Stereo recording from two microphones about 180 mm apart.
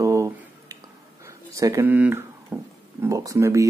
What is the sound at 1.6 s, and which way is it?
Speech, 15° right (ahead or behind).